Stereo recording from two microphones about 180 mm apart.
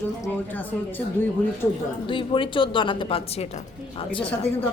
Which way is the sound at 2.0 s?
25° left (ahead or behind).